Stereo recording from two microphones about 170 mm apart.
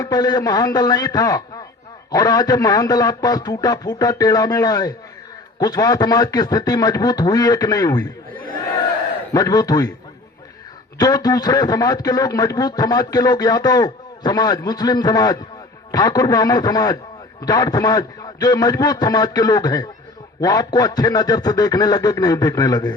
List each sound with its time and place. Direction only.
0.0 s a man's voice: 20° left (ahead or behind)
9.3 s a man's voice: 20° left (ahead or behind)
10.9 s a man's voice: 20° left (ahead or behind)